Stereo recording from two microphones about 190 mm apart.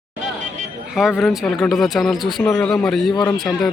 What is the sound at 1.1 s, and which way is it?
Speech, centre (ahead or behind).